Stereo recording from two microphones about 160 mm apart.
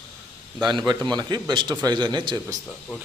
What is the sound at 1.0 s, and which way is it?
A man's voice, 25° right (ahead or behind).